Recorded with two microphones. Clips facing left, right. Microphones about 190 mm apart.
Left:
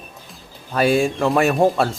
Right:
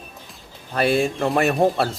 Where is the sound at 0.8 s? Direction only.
Centre (ahead or behind).